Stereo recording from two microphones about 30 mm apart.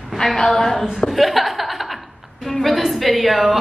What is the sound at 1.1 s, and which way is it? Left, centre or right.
Chuckle, centre.